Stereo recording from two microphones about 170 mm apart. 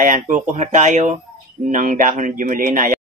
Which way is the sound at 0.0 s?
50° right (ahead or behind).